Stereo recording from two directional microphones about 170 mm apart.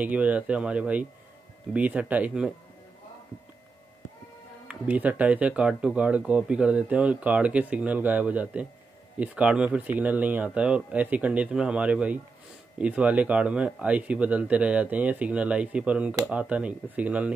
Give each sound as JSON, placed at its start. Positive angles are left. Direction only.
{"t": 0.0, "sound": "speech", "side_deg": -10}
{"t": 4.6, "sound": "speech", "side_deg": -10}